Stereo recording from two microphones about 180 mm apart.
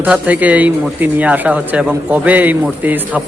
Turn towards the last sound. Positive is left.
turn(degrees=-10)  # may be behind; listen again after turning